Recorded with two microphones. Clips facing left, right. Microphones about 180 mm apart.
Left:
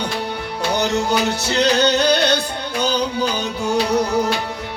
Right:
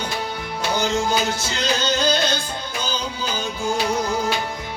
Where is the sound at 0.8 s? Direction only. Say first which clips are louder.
Left 2 dB; 70° left (ahead or behind).